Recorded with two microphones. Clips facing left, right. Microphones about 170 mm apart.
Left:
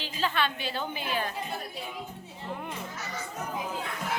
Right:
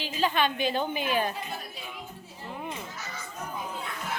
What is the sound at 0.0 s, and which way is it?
A woman's voice, 15° right (ahead or behind).